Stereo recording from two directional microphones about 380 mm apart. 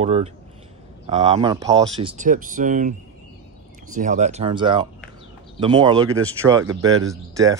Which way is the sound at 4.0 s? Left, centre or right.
Centre.